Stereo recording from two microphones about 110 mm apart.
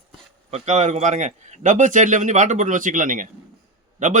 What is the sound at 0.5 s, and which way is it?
Speech, 90° right.